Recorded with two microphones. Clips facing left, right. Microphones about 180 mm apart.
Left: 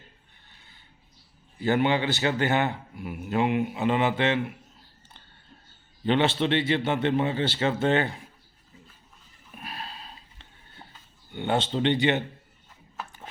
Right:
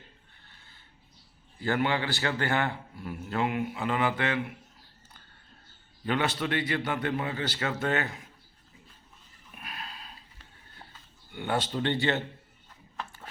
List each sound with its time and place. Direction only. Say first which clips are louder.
1.5 s a man's voice: left 4 dB; 20° left (ahead or behind)
6.1 s a man's voice: left 6 dB; 25° left (ahead or behind)
9.6 s a sound: left 4 dB; 30° left (ahead or behind)
11.3 s a man's voice: left 4 dB; 25° left (ahead or behind)